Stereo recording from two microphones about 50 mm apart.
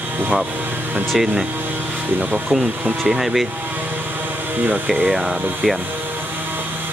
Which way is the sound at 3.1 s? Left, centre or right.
Centre.